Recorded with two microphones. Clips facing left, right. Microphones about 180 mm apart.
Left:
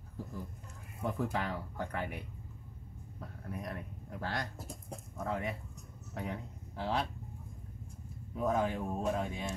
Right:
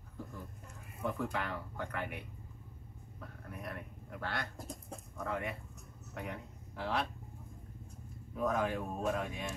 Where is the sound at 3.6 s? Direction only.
35° left (ahead or behind).